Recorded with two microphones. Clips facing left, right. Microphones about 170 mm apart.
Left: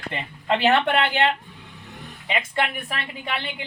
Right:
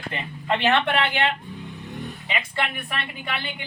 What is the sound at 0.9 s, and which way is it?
A woman's voice, 40° left (ahead or behind).